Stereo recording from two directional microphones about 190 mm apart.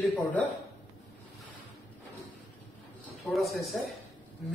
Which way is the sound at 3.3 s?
Centre (ahead or behind).